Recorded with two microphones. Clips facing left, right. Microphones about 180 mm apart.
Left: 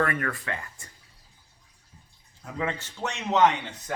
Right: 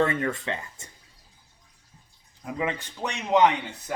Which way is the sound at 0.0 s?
25° right (ahead or behind).